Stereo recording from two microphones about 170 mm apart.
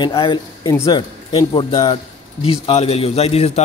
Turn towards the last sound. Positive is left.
turn(degrees=35)  # may be behind; listen again after turning